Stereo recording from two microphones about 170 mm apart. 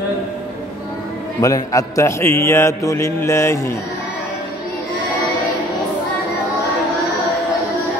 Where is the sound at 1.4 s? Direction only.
20° left (ahead or behind).